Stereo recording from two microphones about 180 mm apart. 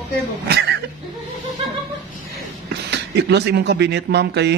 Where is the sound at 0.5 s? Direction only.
65° right (ahead or behind).